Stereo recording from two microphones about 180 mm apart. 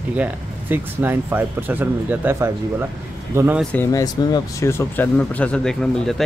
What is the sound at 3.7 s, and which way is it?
Speech, 15° left (ahead or behind).